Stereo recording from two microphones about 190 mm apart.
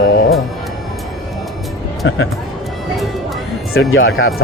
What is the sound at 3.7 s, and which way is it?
Speech, 90° left.